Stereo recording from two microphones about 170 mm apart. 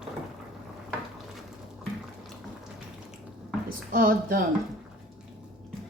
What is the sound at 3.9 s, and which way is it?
Speech, 55° right (ahead or behind).